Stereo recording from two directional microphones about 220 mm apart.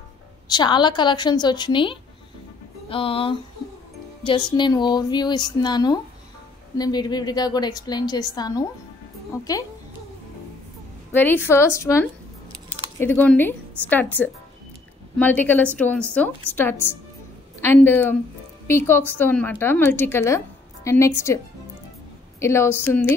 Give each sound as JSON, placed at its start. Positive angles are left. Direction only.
{"t": 0.5, "sound": "a woman's voice", "side_deg": 20}
{"t": 4.5, "sound": "a woman's voice", "side_deg": 20}
{"t": 11.1, "sound": "a woman's voice", "side_deg": 10}
{"t": 22.4, "sound": "a woman's voice", "side_deg": 10}